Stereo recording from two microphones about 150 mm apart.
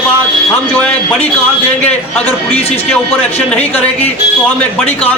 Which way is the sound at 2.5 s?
45° left (ahead or behind).